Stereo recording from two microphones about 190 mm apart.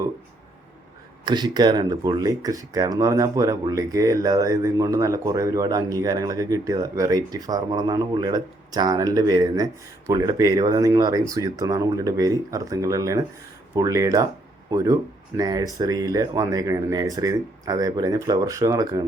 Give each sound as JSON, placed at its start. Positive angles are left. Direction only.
{"t": 1.2, "sound": "speech", "side_deg": -20}